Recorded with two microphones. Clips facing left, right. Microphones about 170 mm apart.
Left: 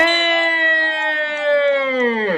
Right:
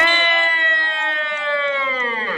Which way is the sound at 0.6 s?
65° left (ahead or behind).